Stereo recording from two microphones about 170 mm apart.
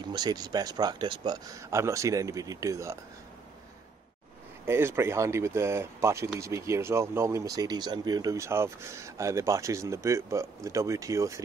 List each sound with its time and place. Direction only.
0.1 s speech: 25° right (ahead or behind)
4.6 s speech: 15° right (ahead or behind)